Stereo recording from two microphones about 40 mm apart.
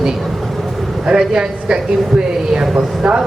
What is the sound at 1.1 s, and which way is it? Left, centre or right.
A woman's voice, right.